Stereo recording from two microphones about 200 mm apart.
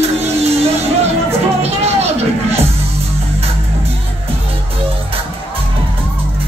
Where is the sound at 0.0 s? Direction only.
30° right (ahead or behind).